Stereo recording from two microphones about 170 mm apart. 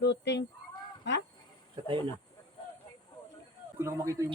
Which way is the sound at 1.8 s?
30° right (ahead or behind).